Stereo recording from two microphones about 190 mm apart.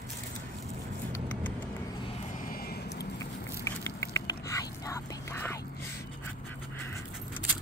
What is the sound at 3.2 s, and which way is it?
Whispering, 15° left (ahead or behind).